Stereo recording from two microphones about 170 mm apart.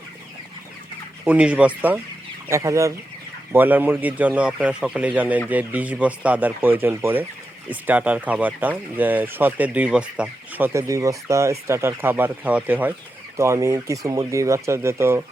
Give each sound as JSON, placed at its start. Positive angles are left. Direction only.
{"t": 1.2, "sound": "speech", "side_deg": -5}